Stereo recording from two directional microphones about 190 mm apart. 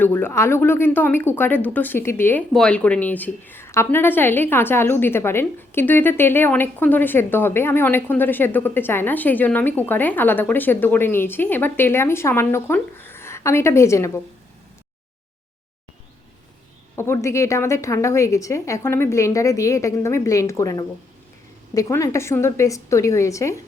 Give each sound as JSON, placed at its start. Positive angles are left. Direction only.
{"t": 0.0, "sound": "a woman's voice", "side_deg": 10}
{"t": 16.9, "sound": "a woman's voice", "side_deg": 15}